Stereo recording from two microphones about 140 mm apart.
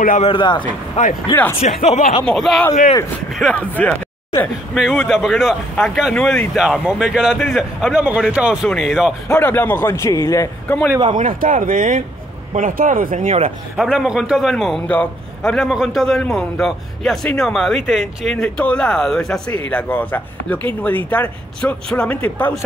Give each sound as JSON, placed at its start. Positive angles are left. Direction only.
{"t": 0.2, "sound": "speech", "side_deg": 35}
{"t": 1.0, "sound": "speech", "side_deg": 55}
{"t": 1.3, "sound": "speech", "side_deg": 15}
{"t": 1.6, "sound": "speech", "side_deg": 55}
{"t": 2.2, "sound": "a man's voice", "side_deg": 0}
{"t": 4.7, "sound": "a man's voice", "side_deg": 0}
{"t": 9.3, "sound": "speech", "side_deg": 15}
{"t": 11.1, "sound": "speech", "side_deg": -65}
{"t": 13.9, "sound": "a man's voice", "side_deg": -5}